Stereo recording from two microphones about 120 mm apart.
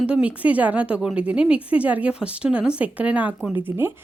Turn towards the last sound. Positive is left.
turn(degrees=-20)  # may be behind; listen again after turning